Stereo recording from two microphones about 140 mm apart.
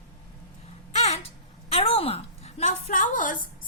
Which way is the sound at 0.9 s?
50° left (ahead or behind).